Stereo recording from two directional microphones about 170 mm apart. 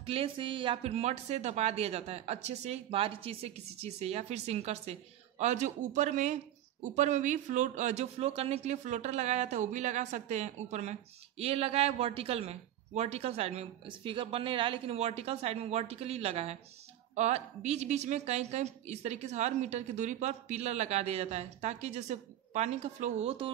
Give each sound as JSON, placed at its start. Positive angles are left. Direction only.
{"t": 0.0, "sound": "speech", "side_deg": -35}